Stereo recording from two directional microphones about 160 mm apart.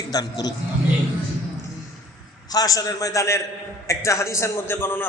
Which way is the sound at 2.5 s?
25° left (ahead or behind).